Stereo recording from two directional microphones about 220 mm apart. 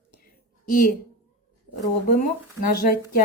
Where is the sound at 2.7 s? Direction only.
40° left (ahead or behind).